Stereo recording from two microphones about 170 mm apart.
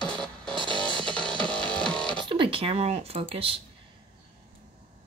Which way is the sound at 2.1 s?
30° right (ahead or behind).